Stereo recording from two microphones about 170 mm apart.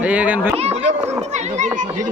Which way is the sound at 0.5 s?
40° right (ahead or behind).